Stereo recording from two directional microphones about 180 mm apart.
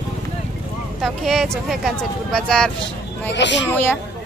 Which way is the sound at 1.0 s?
Centre (ahead or behind).